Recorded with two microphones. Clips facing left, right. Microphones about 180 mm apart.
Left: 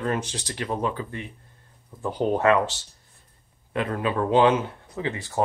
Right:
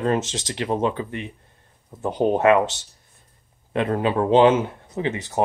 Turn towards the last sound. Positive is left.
turn(degrees=-20)  # may be behind; listen again after turning